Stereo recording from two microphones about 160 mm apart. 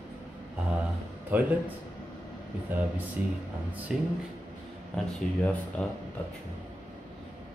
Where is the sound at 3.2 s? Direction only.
10° right (ahead or behind).